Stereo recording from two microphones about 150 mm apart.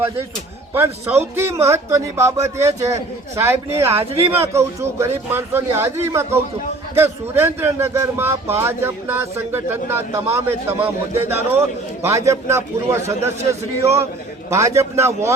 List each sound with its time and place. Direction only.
0.7 s a man's voice: 15° right (ahead or behind)